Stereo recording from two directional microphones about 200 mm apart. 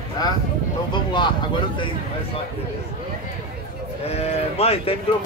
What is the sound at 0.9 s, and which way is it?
Speech, 20° left (ahead or behind).